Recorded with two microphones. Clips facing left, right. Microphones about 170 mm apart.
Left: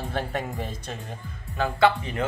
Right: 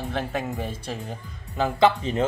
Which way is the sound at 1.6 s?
20° right (ahead or behind).